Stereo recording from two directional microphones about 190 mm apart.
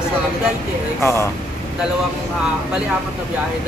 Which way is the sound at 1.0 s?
15° left (ahead or behind).